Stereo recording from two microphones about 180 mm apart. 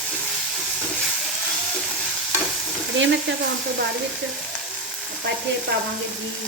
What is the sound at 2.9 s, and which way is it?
Frying, 90° right.